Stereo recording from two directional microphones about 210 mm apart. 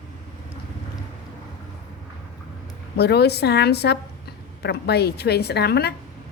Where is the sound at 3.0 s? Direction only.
50° left (ahead or behind).